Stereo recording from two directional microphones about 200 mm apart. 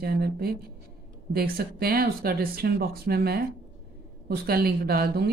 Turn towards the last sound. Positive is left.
turn(degrees=-50)  # may be behind; listen again after turning